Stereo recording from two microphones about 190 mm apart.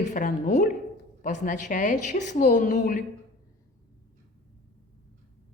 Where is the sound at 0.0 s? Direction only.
40° left (ahead or behind).